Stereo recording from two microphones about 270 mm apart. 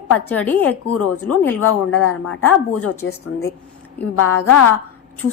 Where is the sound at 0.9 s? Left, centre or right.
Left.